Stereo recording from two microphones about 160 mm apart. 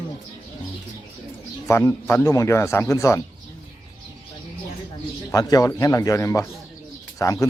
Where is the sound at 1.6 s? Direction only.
15° left (ahead or behind).